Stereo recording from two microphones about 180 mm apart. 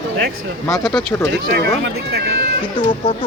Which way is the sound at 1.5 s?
60° right (ahead or behind).